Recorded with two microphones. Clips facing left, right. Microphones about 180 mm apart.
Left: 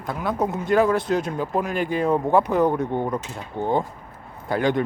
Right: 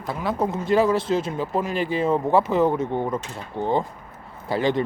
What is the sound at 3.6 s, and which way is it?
Speech, 15° right (ahead or behind).